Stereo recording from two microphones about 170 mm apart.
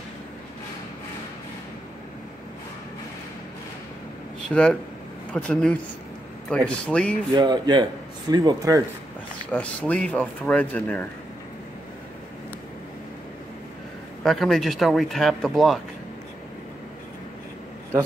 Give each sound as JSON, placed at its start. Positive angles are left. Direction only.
{"t": 4.5, "sound": "speech", "side_deg": 5}
{"t": 7.3, "sound": "speech", "side_deg": -25}
{"t": 9.5, "sound": "speech", "side_deg": 10}
{"t": 14.2, "sound": "speech", "side_deg": 0}